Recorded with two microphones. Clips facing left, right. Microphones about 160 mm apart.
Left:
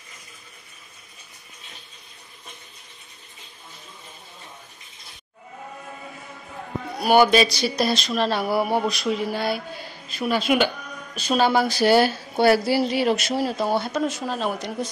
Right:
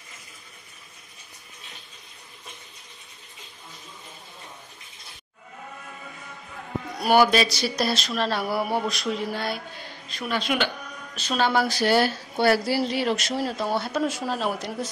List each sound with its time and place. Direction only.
7.0 s speech: centre (ahead or behind)